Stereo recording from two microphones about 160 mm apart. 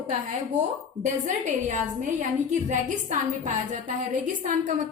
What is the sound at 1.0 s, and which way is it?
A woman's voice, 50° right (ahead or behind).